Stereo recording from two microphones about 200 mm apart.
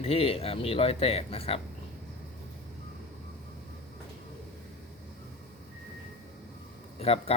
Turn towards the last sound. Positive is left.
turn(degrees=30)  # may be behind; listen again after turning